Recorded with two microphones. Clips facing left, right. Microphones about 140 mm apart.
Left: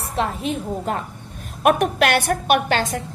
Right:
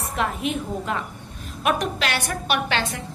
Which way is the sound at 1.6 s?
55° left (ahead or behind).